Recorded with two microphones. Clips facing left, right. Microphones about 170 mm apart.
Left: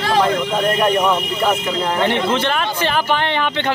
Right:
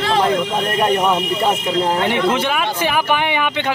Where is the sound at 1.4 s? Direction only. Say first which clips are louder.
Right 1 dB; 25° right (ahead or behind).